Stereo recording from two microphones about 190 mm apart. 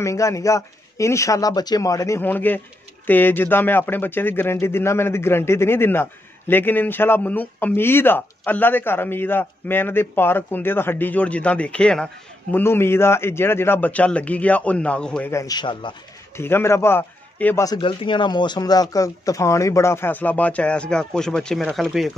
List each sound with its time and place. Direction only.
0.0 s speech: 15° left (ahead or behind)
16.3 s a man's voice: 10° left (ahead or behind)
17.6 s speech: 25° left (ahead or behind); by 22.1 s centre (ahead or behind)